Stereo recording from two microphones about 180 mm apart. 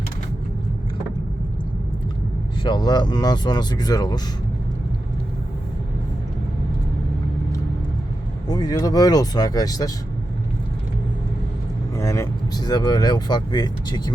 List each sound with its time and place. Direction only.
2.6 s speech: 25° left (ahead or behind)
8.4 s speech: 20° left (ahead or behind)
11.9 s speech: 15° left (ahead or behind)